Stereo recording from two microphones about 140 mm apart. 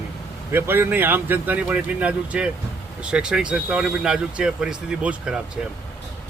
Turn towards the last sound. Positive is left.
turn(degrees=-5)  # may be behind; listen again after turning